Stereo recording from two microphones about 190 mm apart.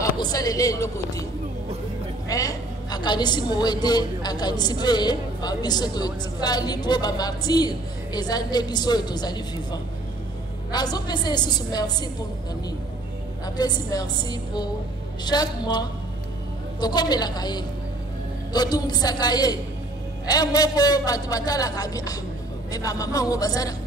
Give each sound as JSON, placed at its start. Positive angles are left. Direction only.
{"t": 0.0, "sound": "a woman's voice", "side_deg": 20}
{"t": 2.2, "sound": "a woman's voice", "side_deg": 20}
{"t": 13.6, "sound": "a woman's voice", "side_deg": 20}